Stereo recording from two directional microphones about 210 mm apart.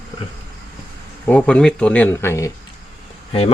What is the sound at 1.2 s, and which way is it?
Speech, 5° left (ahead or behind).